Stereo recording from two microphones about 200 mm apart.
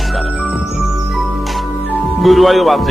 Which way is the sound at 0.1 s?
Centre (ahead or behind).